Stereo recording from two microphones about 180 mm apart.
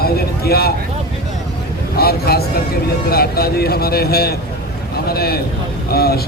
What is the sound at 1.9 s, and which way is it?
A man's voice, 60° left (ahead or behind).